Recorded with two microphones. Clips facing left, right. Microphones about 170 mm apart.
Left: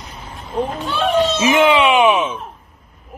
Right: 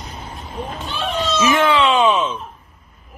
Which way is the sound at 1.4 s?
20° left (ahead or behind).